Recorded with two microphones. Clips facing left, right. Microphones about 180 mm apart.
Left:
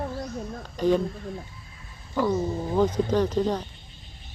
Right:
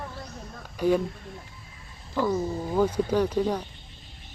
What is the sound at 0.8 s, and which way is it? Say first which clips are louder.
Speech: left 1 dB; 10° right (ahead or behind).